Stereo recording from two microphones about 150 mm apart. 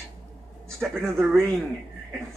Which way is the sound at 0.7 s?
Centre (ahead or behind).